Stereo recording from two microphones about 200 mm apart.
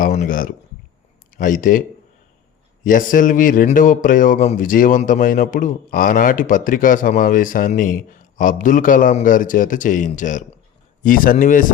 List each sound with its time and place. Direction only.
0.0 s speech: 40° left (ahead or behind)
2.8 s a man's voice: 40° left (ahead or behind)